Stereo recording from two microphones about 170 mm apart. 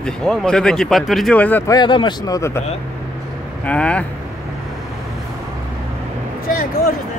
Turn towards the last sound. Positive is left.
turn(degrees=60)  # may be behind; listen again after turning